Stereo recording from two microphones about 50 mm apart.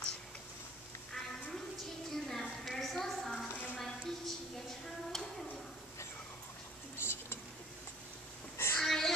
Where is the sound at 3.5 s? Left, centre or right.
Left.